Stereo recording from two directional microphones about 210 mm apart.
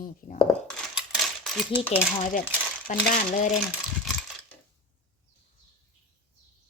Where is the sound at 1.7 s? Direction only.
10° right (ahead or behind).